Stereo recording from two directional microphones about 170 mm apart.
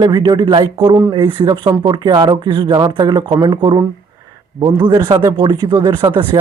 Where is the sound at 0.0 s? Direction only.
25° right (ahead or behind).